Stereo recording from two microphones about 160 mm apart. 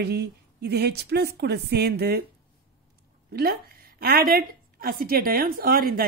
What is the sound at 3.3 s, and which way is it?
Speech, 70° right (ahead or behind).